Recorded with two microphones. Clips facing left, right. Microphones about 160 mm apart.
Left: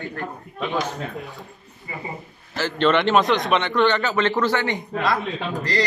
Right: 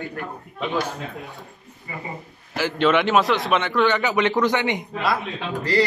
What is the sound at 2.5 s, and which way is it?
A man's voice, 10° right (ahead or behind).